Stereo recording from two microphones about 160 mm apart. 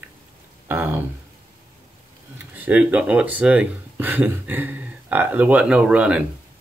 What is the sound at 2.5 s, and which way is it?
Speech, 10° right (ahead or behind).